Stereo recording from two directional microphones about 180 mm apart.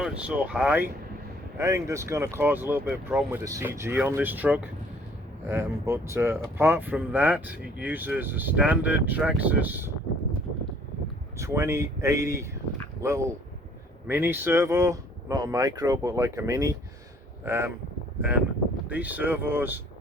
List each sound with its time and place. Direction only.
0.0 s speech: 5° right (ahead or behind)
11.3 s speech: 15° right (ahead or behind)
18.9 s speech: 10° right (ahead or behind)